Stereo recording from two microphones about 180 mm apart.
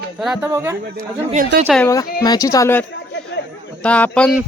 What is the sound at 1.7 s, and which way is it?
Speech, 5° left (ahead or behind).